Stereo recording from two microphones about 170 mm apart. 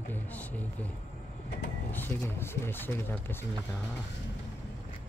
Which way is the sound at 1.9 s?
10° left (ahead or behind).